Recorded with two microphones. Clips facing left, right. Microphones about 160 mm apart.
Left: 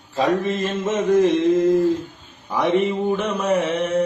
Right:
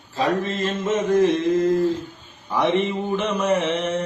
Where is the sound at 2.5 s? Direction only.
5° left (ahead or behind).